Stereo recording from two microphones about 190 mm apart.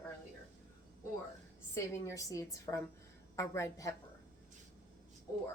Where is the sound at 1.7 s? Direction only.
15° left (ahead or behind).